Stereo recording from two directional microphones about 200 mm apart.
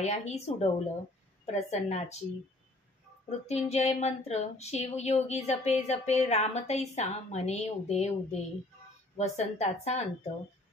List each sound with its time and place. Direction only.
0.0 s speech: 35° left (ahead or behind)
3.3 s speech: 35° left (ahead or behind)